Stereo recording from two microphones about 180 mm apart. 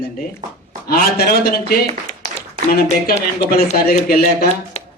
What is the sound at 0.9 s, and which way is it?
Speech, 60° left (ahead or behind).